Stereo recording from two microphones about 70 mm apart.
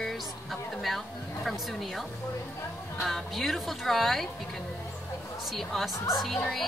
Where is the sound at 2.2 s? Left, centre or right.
Left.